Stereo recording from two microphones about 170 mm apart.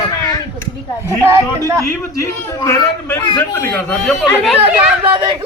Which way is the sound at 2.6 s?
15° left (ahead or behind).